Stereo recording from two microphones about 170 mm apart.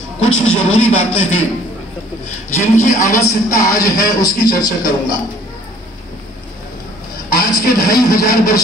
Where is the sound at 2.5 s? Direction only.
15° left (ahead or behind).